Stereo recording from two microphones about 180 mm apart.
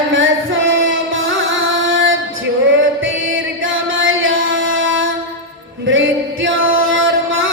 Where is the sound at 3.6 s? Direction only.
90° right.